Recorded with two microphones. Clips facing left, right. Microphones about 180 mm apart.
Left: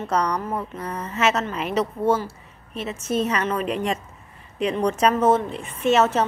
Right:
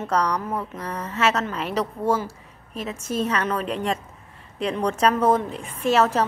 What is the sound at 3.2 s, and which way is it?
A woman's voice, 5° left (ahead or behind).